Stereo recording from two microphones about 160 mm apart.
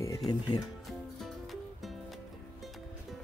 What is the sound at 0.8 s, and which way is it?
Music, centre (ahead or behind).